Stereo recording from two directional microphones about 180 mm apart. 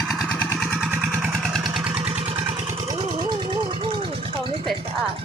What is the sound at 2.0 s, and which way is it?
Vehicle, 35° right (ahead or behind).